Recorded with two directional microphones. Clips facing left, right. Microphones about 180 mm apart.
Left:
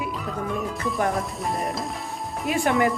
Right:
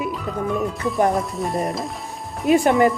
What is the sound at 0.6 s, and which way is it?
Speech, centre (ahead or behind).